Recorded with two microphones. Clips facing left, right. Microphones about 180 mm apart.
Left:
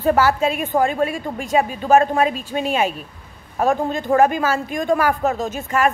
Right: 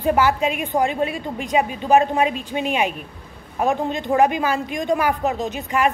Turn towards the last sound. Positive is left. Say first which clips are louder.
# left 1 dB
turn(degrees=-15)  # may be behind; listen again after turning